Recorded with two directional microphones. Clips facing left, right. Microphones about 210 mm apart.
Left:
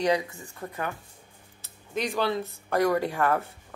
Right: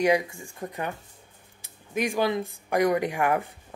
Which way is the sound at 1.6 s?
10° right (ahead or behind).